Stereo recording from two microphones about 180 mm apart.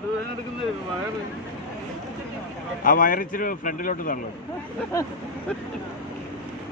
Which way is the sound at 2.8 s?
50° left (ahead or behind).